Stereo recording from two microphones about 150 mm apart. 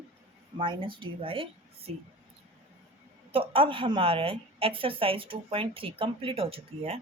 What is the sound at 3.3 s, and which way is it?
A woman's voice, 35° right (ahead or behind).